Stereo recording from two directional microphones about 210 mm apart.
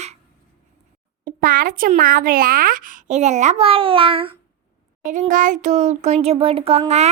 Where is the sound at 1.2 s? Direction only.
45° right (ahead or behind); by 4.3 s 25° right (ahead or behind).